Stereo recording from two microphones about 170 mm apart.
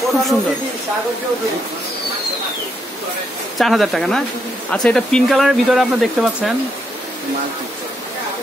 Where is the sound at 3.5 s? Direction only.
Centre (ahead or behind).